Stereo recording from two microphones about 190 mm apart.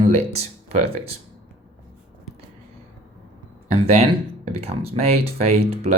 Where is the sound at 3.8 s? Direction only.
35° right (ahead or behind).